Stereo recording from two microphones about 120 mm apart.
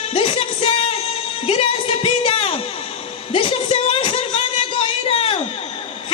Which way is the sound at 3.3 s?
50° left (ahead or behind).